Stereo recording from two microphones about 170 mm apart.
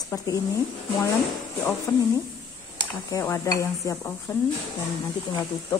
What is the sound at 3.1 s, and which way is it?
A woman's voice, 20° left (ahead or behind).